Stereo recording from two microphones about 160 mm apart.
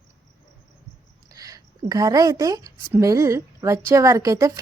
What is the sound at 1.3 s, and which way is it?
A woman's voice, 20° right (ahead or behind).